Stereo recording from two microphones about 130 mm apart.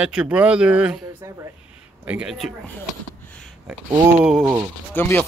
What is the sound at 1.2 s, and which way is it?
Speech, 25° right (ahead or behind).